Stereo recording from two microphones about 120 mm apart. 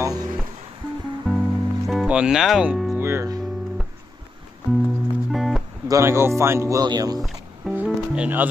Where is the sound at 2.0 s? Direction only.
10° right (ahead or behind).